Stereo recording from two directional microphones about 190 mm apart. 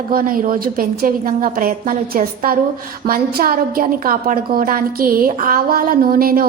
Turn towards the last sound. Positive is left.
turn(degrees=-50)  # may be behind; listen again after turning